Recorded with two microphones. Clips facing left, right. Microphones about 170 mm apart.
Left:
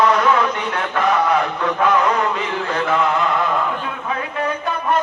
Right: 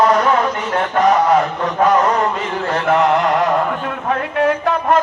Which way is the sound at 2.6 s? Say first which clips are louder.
Right 5 dB; 50° right (ahead or behind).